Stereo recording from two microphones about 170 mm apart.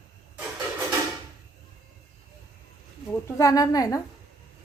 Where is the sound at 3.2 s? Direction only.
20° left (ahead or behind).